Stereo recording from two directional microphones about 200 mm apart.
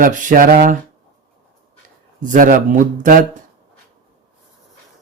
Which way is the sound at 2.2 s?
40° right (ahead or behind).